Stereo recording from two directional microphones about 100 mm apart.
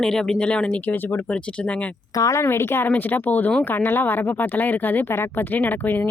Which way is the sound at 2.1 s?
30° left (ahead or behind).